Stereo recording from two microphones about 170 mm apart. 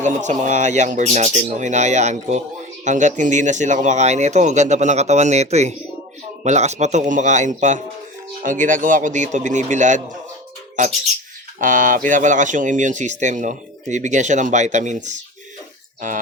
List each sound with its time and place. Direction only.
0.0 s speech: 45° right (ahead or behind)
11.6 s speech: 50° right (ahead or behind)